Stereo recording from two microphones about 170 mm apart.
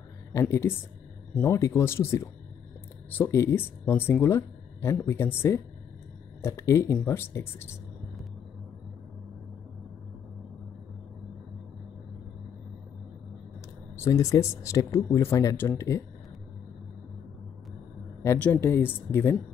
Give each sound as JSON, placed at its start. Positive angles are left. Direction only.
{"t": 0.3, "sound": "speech", "side_deg": 15}
{"t": 13.9, "sound": "speech", "side_deg": 15}
{"t": 18.2, "sound": "speech", "side_deg": 15}